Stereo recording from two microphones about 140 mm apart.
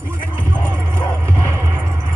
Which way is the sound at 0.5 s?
15° right (ahead or behind).